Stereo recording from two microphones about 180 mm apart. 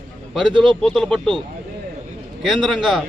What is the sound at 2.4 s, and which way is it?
Speech, centre (ahead or behind).